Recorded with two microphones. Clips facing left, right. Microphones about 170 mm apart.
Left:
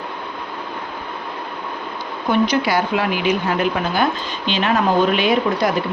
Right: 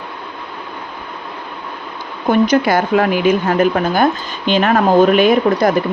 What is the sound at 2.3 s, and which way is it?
Speech, 50° right (ahead or behind).